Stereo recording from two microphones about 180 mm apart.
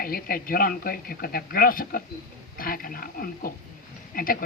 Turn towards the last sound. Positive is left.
turn(degrees=55)  # may be behind; listen again after turning